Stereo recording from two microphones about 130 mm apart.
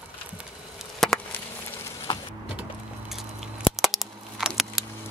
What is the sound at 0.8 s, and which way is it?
Chop, centre (ahead or behind).